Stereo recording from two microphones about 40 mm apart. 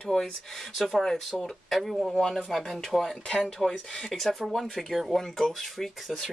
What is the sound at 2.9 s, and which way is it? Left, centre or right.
Speech, centre.